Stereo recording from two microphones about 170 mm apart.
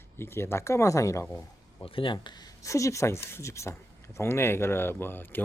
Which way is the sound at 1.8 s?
30° left (ahead or behind).